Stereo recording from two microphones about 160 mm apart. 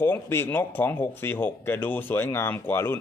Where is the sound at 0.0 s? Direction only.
15° left (ahead or behind).